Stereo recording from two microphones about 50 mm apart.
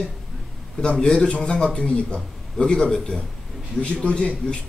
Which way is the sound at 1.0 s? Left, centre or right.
Centre.